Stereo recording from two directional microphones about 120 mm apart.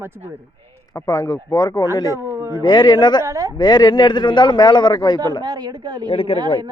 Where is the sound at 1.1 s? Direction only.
30° left (ahead or behind).